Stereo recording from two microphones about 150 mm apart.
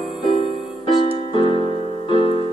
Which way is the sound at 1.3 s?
35° left (ahead or behind).